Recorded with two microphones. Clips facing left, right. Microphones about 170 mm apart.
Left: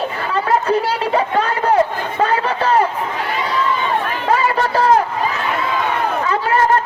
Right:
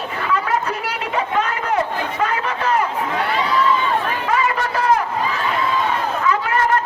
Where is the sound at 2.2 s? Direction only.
30° left (ahead or behind).